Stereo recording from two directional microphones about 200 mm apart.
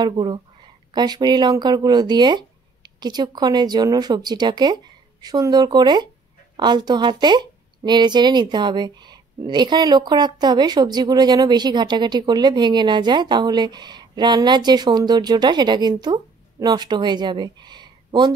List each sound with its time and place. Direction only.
0.0 s a woman's voice: 20° right (ahead or behind)